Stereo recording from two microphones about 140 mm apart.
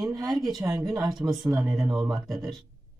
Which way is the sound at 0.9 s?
30° right (ahead or behind).